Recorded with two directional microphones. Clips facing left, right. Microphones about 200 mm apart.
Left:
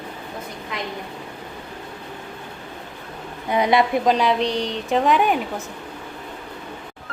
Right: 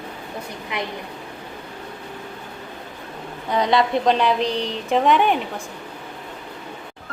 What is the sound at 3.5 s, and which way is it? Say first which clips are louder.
A woman's voice: left 1 dB; 10° left (ahead or behind).